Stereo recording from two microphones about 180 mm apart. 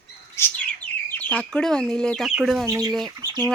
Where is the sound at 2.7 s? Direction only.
20° right (ahead or behind).